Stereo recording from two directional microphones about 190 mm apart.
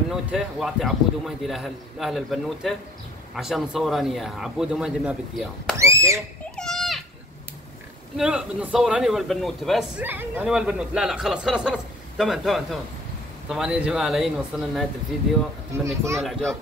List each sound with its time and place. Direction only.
0.1 s a man's voice: 5° right (ahead or behind)
5.8 s speech: 15° right (ahead or behind)
6.5 s a sound: centre (ahead or behind)
8.2 s a man's voice: 5° right (ahead or behind)
15.8 s speech: 15° right (ahead or behind)
16.2 s a man's voice: 5° left (ahead or behind)